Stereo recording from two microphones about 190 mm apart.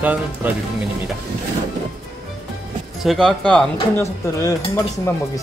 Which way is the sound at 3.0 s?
Centre (ahead or behind).